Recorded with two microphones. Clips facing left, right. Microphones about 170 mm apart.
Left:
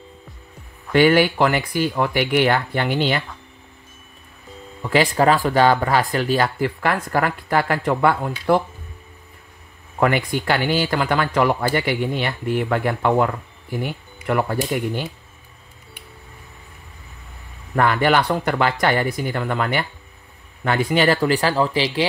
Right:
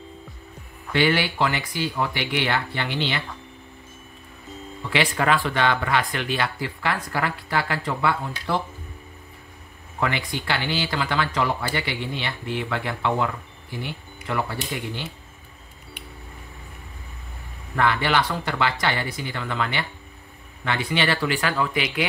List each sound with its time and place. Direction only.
0.9 s speech: 50° left (ahead or behind)
4.8 s speech: 40° left (ahead or behind)
9.9 s speech: 50° left (ahead or behind)
17.7 s speech: 45° left (ahead or behind); by 22.0 s 30° left (ahead or behind)